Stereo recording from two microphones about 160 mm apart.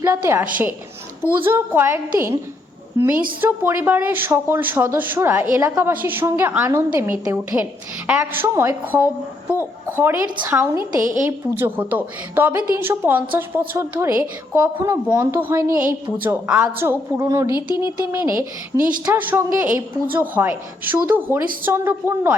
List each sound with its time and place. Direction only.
0.0 s a woman's voice: 15° right (ahead or behind)
3.4 s a woman's voice: 15° right (ahead or behind)